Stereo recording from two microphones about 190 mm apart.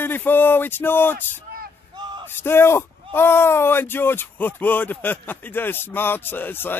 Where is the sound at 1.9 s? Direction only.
25° right (ahead or behind).